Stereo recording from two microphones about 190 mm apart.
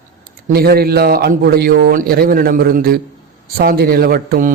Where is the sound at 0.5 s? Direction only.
55° right (ahead or behind).